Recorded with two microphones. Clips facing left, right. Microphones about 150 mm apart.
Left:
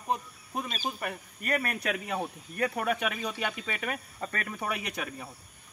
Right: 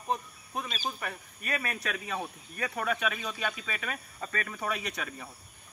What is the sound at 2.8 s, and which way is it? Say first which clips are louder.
Speech: left 2 dB; 15° left (ahead or behind).